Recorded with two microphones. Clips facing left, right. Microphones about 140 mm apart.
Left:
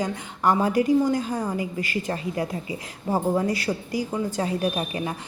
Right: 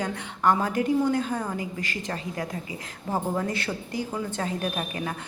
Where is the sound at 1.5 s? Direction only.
45° right (ahead or behind).